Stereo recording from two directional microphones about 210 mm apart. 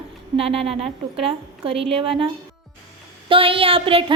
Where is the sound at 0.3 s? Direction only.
25° right (ahead or behind).